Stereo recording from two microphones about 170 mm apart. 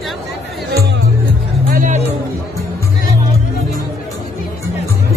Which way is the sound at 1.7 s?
50° right (ahead or behind).